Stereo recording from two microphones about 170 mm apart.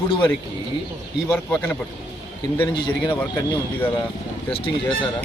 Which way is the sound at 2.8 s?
25° left (ahead or behind).